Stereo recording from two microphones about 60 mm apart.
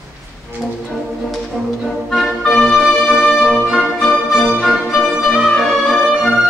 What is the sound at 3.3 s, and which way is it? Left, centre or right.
Music, centre.